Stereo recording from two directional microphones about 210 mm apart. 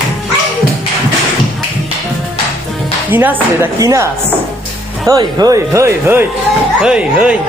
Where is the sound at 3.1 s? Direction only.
10° right (ahead or behind).